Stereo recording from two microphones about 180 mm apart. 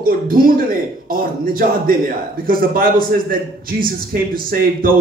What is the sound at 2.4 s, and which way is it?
Speech, 55° right (ahead or behind).